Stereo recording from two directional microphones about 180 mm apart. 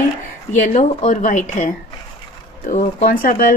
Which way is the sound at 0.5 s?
40° left (ahead or behind).